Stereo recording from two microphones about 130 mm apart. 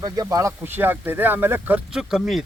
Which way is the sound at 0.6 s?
15° right (ahead or behind).